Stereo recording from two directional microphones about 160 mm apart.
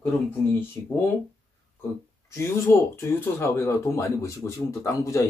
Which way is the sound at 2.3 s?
15° left (ahead or behind).